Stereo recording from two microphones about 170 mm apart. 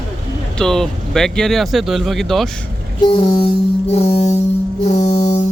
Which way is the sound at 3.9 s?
40° left (ahead or behind).